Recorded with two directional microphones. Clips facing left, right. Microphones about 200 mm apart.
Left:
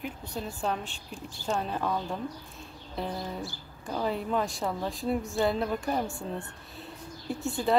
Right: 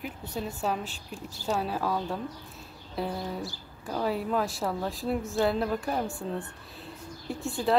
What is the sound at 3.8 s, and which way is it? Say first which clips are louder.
A woman's voice: right 1 dB; 5° right (ahead or behind).